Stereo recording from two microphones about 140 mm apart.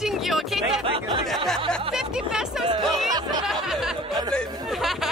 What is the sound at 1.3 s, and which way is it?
Speech, centre (ahead or behind).